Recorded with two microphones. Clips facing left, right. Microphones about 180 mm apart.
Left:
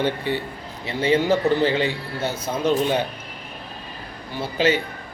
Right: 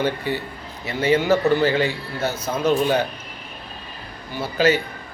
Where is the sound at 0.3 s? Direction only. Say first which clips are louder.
Left 1 dB; 25° left (ahead or behind).